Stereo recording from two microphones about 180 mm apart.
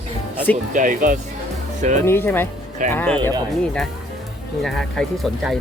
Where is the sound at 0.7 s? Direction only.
45° right (ahead or behind).